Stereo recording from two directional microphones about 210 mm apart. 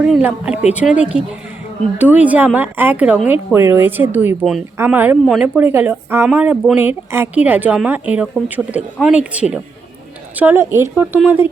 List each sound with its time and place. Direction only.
0.0 s a woman's voice: 5° right (ahead or behind)